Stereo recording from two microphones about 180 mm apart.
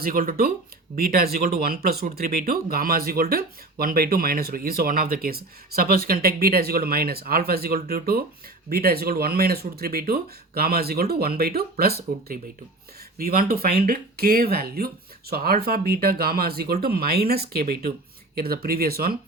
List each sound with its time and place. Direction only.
0.0 s speech: 55° right (ahead or behind)
13.1 s speech: 55° right (ahead or behind)